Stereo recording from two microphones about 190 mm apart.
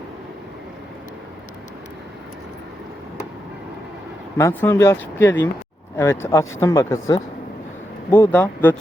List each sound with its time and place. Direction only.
4.4 s speech: 15° left (ahead or behind)